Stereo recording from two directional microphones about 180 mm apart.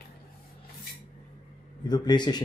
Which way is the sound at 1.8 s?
25° left (ahead or behind).